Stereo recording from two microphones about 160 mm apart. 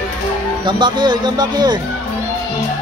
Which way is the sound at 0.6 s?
30° right (ahead or behind).